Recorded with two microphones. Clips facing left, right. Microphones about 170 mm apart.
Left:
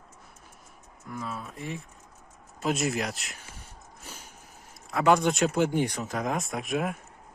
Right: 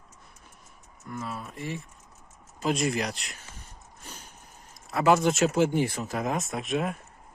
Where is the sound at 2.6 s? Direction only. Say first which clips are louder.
Right 1 dB; centre (ahead or behind).